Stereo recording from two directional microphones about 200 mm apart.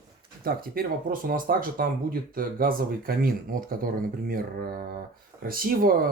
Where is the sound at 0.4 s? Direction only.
50° right (ahead or behind).